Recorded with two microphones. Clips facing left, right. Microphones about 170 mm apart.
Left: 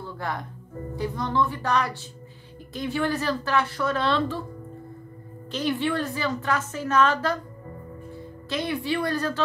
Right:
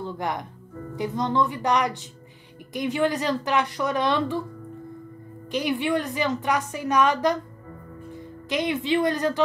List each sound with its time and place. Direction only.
0.0 s a woman's voice: 20° right (ahead or behind)
5.5 s a woman's voice: 15° right (ahead or behind)